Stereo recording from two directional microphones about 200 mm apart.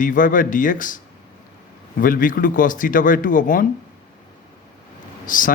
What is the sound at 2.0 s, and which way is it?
A man's voice, 45° left (ahead or behind).